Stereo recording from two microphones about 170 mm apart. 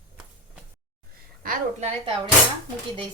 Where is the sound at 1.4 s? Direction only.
55° right (ahead or behind).